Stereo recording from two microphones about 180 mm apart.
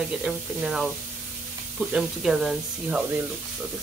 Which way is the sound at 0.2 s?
5° right (ahead or behind).